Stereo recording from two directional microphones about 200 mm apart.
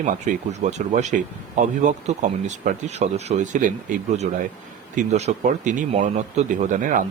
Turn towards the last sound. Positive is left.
turn(degrees=-40)  # may be behind; listen again after turning